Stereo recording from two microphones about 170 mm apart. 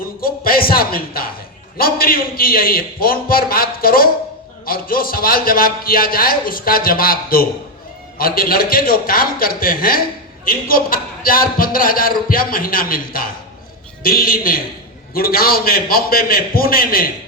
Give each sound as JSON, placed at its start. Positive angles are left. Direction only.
{"t": 0.2, "sound": "a man's voice", "side_deg": 60}